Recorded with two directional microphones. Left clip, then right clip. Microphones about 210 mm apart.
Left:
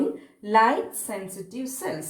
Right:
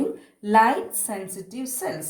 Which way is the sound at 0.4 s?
50° right (ahead or behind).